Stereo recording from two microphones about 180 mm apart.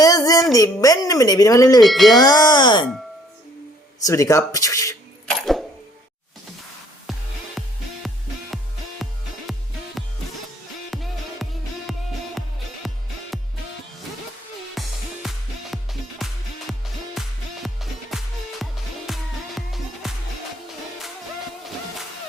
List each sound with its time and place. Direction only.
0.0 s a sound: 20° left (ahead or behind)
0.5 s speech: 20° left (ahead or behind)
1.8 s speech: centre (ahead or behind)
2.1 s speech: 20° left (ahead or behind)
4.0 s speech: 15° left (ahead or behind)
7.1 s music: centre (ahead or behind)
10.9 s music: centre (ahead or behind)
14.8 s music: centre (ahead or behind)